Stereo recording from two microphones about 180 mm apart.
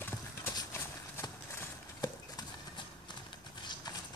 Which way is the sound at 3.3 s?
25° left (ahead or behind).